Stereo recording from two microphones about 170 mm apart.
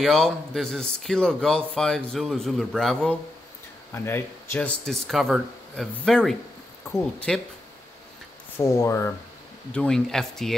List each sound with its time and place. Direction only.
0.0 s speech: centre (ahead or behind)
3.9 s speech: 15° left (ahead or behind)
8.5 s speech: 15° left (ahead or behind)
9.7 s speech: 5° left (ahead or behind)